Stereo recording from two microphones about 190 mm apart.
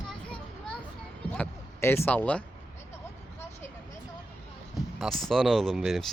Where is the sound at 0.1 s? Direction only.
5° left (ahead or behind).